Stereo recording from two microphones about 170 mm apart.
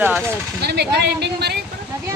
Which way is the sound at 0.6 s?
75° right (ahead or behind).